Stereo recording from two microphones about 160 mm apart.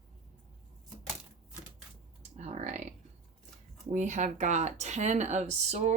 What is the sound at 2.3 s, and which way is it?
Typing, 45° right (ahead or behind).